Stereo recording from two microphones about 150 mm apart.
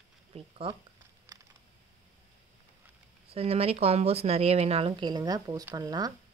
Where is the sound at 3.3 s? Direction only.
40° right (ahead or behind); by 6.1 s 25° right (ahead or behind).